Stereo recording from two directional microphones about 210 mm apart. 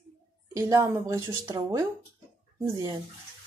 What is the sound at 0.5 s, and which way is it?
A woman's voice, 15° right (ahead or behind).